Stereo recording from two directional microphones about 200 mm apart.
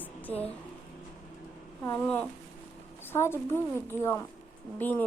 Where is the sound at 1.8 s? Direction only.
10° left (ahead or behind).